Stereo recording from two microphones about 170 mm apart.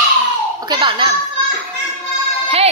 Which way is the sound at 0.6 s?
25° right (ahead or behind).